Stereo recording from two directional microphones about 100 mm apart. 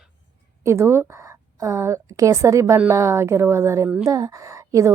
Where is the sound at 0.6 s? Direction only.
30° right (ahead or behind).